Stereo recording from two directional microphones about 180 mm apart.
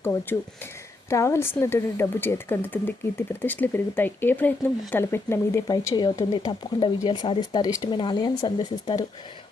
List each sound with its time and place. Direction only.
0.0 s speech: 10° left (ahead or behind)